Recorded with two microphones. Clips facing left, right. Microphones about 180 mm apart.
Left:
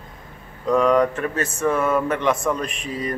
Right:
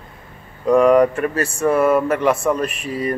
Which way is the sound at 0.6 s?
10° right (ahead or behind).